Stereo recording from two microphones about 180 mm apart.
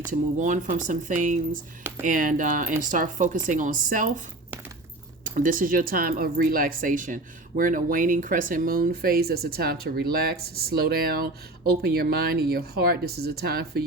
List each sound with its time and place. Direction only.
0.1 s speech: 45° right (ahead or behind)
5.2 s speech: 50° right (ahead or behind)